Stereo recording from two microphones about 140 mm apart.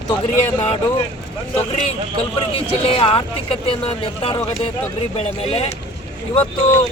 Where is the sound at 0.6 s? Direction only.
45° left (ahead or behind).